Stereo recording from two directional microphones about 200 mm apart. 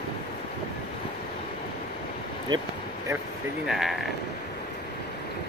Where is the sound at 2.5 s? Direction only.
20° right (ahead or behind).